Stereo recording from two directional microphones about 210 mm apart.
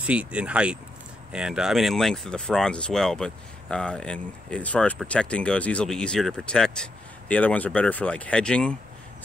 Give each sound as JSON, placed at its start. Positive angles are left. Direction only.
{"t": 0.0, "sound": "speech", "side_deg": -5}